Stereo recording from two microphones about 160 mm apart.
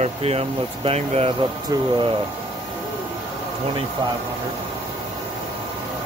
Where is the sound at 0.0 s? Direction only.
40° right (ahead or behind).